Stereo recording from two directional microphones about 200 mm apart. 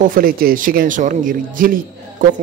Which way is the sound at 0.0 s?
45° right (ahead or behind).